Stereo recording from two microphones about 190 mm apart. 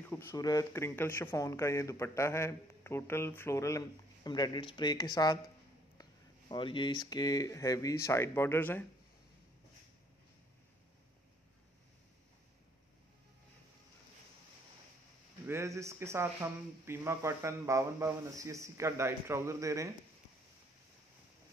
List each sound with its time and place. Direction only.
0.0 s speech: 10° left (ahead or behind)
6.5 s speech: 25° left (ahead or behind)
15.4 s speech: 15° right (ahead or behind)